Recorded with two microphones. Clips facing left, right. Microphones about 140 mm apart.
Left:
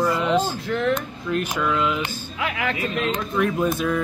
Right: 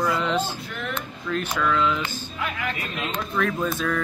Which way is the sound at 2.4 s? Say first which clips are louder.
Left 4 dB; 90° left.